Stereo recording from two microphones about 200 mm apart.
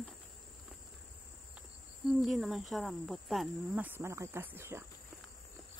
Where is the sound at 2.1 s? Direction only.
Centre (ahead or behind).